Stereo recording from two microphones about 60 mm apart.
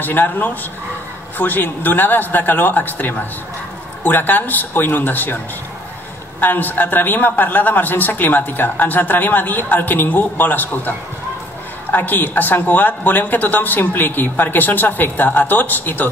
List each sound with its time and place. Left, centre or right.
0.0 s speech: left
6.4 s speech: left